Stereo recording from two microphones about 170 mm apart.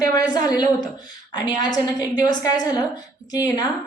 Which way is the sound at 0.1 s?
25° left (ahead or behind).